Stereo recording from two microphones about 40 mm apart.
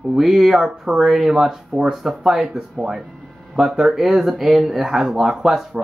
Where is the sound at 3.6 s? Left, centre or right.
Centre.